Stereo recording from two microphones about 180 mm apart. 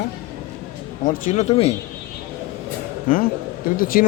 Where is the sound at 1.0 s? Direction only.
45° left (ahead or behind).